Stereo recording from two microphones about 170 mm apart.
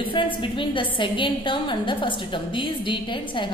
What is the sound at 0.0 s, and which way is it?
A woman's voice, 30° left (ahead or behind).